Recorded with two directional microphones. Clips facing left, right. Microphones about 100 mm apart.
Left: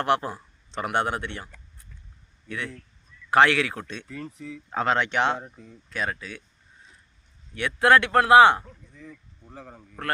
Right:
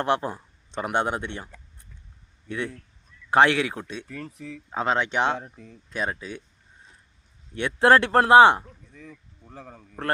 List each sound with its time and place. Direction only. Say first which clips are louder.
0.0 s speech: even; 20° right (ahead or behind)
2.5 s speech: right 3 dB; 25° right (ahead or behind)
4.1 s speech: even; 65° right (ahead or behind)
4.7 s speech: even; 10° right (ahead or behind)
5.9 s speech: right 1 dB; 25° right (ahead or behind)
7.5 s speech: right 1 dB; 30° right (ahead or behind)